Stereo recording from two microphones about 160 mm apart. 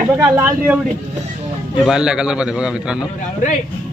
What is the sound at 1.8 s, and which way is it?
A man's voice, 5° right (ahead or behind).